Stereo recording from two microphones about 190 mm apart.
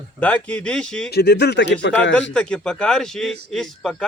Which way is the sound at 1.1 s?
60° left (ahead or behind).